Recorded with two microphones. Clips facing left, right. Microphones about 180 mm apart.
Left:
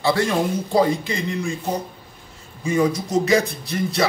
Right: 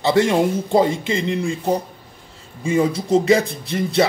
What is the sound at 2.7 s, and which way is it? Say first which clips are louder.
A man's voice: right 2 dB; 30° right (ahead or behind).